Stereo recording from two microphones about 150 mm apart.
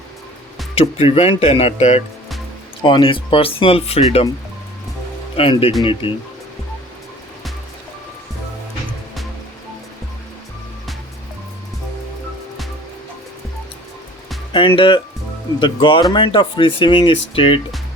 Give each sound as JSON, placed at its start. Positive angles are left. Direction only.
{"t": 0.8, "sound": "speech", "side_deg": 40}
{"t": 2.8, "sound": "speech", "side_deg": 35}
{"t": 5.4, "sound": "speech", "side_deg": 40}
{"t": 14.8, "sound": "speech", "side_deg": 35}